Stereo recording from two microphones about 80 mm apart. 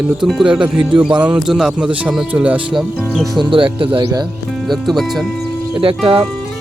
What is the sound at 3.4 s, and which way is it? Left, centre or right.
Speech, right.